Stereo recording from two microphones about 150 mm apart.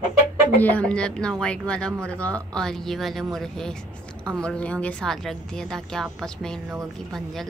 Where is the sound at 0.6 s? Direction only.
10° left (ahead or behind).